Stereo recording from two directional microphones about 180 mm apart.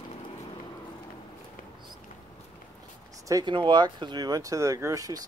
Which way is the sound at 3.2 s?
20° right (ahead or behind).